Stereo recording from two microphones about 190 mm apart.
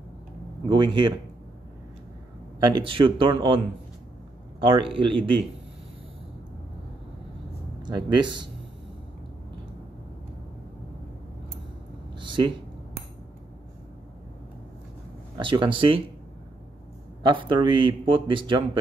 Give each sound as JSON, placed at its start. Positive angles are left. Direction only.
{"t": 0.7, "sound": "speech", "side_deg": -25}
{"t": 2.6, "sound": "speech", "side_deg": -25}
{"t": 7.8, "sound": "speech", "side_deg": -25}
{"t": 12.2, "sound": "a sound", "side_deg": -25}
{"t": 15.3, "sound": "speech", "side_deg": -25}
{"t": 17.2, "sound": "speech", "side_deg": -25}